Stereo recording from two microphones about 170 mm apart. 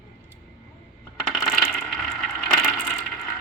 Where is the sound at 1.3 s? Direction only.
Centre (ahead or behind).